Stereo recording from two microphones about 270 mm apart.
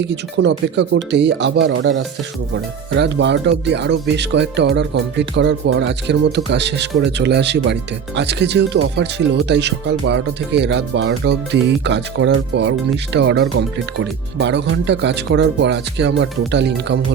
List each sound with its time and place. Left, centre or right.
0.1 s speech: right